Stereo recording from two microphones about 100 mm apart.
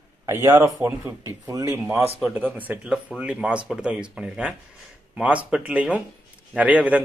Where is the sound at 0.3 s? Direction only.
25° right (ahead or behind).